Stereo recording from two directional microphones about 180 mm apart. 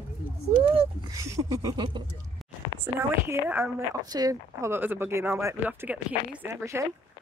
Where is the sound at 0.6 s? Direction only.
30° right (ahead or behind).